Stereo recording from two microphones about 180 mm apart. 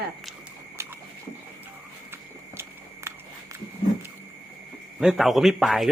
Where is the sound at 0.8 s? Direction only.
15° right (ahead or behind).